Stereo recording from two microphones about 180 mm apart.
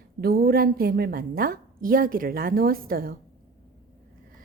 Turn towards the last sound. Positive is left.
turn(degrees=-55)  # may be behind; listen again after turning